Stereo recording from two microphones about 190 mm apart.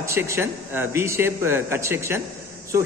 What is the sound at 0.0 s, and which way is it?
A man's voice, 15° right (ahead or behind).